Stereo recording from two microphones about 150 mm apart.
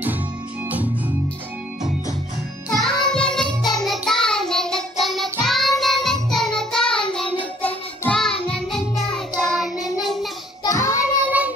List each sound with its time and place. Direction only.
2.8 s child singing: 5° left (ahead or behind)
6.3 s music: 5° left (ahead or behind)
9.4 s child singing: 5° left (ahead or behind)
9.9 s a sound: centre (ahead or behind)
10.6 s child singing: 20° left (ahead or behind)